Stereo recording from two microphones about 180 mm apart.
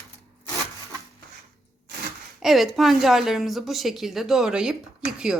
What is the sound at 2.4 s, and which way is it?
A woman's voice, centre (ahead or behind).